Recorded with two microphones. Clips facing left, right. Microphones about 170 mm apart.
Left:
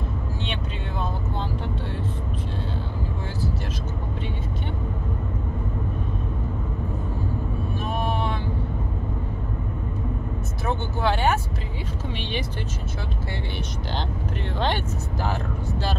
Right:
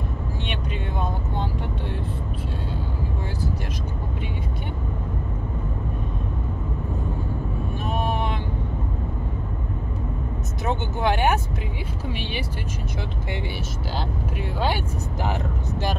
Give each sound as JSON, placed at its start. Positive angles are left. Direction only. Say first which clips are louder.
{"t": 7.9, "sound": "vehicle", "louder": "right 1 dB", "side_deg": -15}
{"t": 10.6, "sound": "vehicle", "louder": "right 1 dB", "side_deg": -15}